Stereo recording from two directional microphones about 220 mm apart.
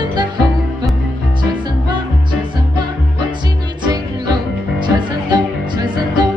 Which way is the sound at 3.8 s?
20° right (ahead or behind).